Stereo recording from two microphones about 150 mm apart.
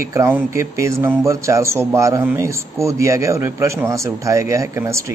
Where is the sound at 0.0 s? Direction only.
20° right (ahead or behind).